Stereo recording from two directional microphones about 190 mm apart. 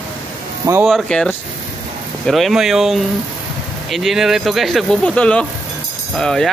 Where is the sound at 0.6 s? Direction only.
15° right (ahead or behind).